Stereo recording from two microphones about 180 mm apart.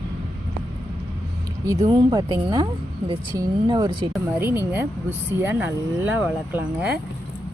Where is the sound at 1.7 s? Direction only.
20° right (ahead or behind).